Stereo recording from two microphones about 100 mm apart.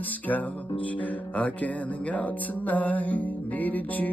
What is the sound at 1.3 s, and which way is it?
Music, 15° left (ahead or behind).